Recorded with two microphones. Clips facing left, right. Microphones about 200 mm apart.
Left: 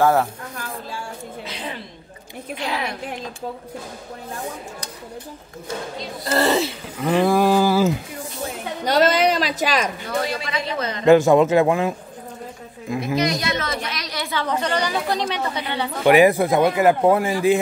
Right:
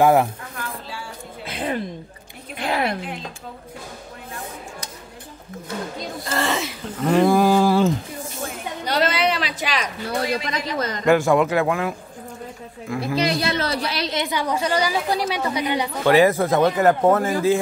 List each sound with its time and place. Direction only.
0.0 s a woman's voice: 15° right (ahead or behind)
1.4 s a sound: 55° right (ahead or behind)
2.5 s a woman's voice: 55° right (ahead or behind)
6.2 s speech: 35° left (ahead or behind)
7.0 s speech: centre (ahead or behind)
8.8 s a sound: 45° left (ahead or behind)
10.5 s a man's voice: 40° right (ahead or behind)
11.1 s speech: 20° left (ahead or behind)
13.0 s a woman's voice: 30° right (ahead or behind); by 15.9 s 10° right (ahead or behind)
16.1 s speech: 15° left (ahead or behind)